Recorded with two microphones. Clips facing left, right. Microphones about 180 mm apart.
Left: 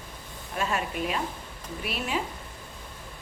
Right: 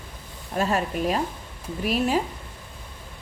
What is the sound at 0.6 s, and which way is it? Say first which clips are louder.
A woman's voice: right 5 dB; 40° right (ahead or behind).